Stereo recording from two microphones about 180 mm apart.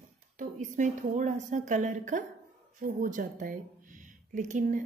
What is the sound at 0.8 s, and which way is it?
A woman's voice, 45° right (ahead or behind).